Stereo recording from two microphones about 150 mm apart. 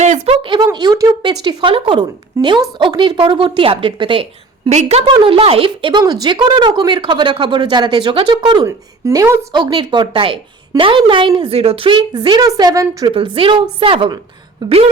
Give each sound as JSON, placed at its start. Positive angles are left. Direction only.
{"t": 0.0, "sound": "a sound", "side_deg": -50}
{"t": 0.4, "sound": "a woman's voice", "side_deg": -30}
{"t": 4.7, "sound": "a woman's voice", "side_deg": -45}
{"t": 5.1, "sound": "a woman's voice", "side_deg": -35}
{"t": 8.6, "sound": "a woman's voice", "side_deg": -20}
{"t": 9.5, "sound": "a woman's voice", "side_deg": -30}
{"t": 13.1, "sound": "a woman's voice", "side_deg": -35}